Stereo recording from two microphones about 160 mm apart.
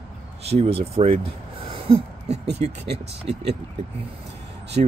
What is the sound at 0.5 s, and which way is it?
Speech, 35° right (ahead or behind).